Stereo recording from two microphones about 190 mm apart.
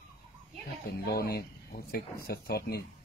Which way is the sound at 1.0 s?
55° left (ahead or behind).